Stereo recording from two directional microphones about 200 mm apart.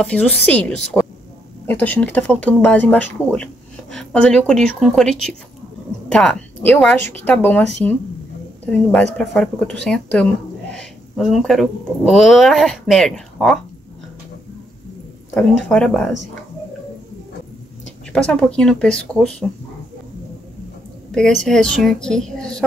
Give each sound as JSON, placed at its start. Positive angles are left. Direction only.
{"t": 0.0, "sound": "speech", "side_deg": 5}
{"t": 15.3, "sound": "speech", "side_deg": 5}
{"t": 18.1, "sound": "speech", "side_deg": 5}
{"t": 21.5, "sound": "speech", "side_deg": 5}